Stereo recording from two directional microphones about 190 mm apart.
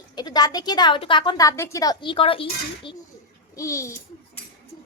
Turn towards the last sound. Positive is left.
turn(degrees=15)  # may be behind; listen again after turning